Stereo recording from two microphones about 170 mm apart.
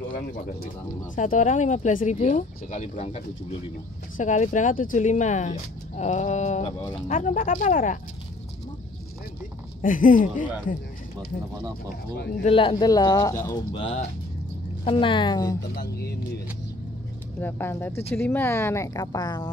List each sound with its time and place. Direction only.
1.1 s speech: 50° left (ahead or behind)
6.6 s speech: 25° left (ahead or behind)
7.1 s speech: 45° left (ahead or behind)
9.8 s speech: 50° left (ahead or behind)
12.2 s speech: 65° left (ahead or behind)
12.4 s speech: 30° left (ahead or behind)
13.6 s speech: 30° left (ahead or behind)
15.7 s speech: 65° left (ahead or behind)
17.4 s speech: 15° left (ahead or behind)